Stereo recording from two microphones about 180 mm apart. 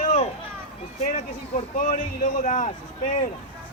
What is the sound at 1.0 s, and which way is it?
Speech, 45° left (ahead or behind).